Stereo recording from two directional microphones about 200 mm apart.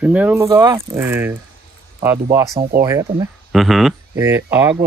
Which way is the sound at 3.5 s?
Centre (ahead or behind).